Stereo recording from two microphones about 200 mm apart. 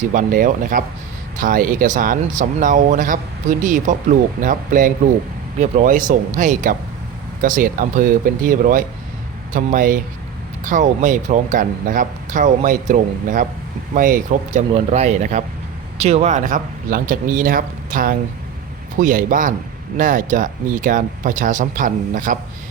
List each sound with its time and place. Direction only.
0.1 s speech: 45° right (ahead or behind)